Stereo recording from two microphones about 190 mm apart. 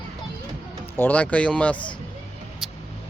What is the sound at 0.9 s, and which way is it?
Speech, 10° left (ahead or behind).